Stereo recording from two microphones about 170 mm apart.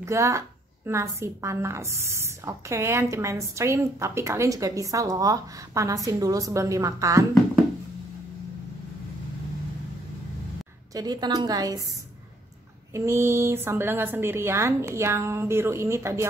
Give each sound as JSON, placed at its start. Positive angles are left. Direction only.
{"t": 0.0, "sound": "a woman's voice", "side_deg": -15}
{"t": 11.0, "sound": "a woman's voice", "side_deg": -25}
{"t": 12.9, "sound": "a woman's voice", "side_deg": -15}